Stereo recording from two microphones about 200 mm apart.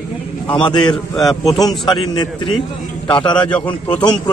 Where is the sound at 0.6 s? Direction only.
20° left (ahead or behind).